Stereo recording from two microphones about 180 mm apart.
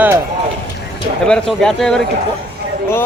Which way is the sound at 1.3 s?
5° left (ahead or behind).